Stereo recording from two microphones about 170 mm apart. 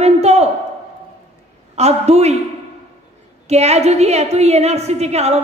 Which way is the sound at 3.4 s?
40° right (ahead or behind).